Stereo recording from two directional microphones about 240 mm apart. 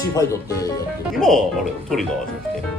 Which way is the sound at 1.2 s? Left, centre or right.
Centre.